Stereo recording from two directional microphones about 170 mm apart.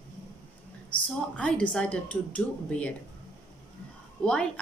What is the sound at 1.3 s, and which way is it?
A woman's voice, 5° left (ahead or behind).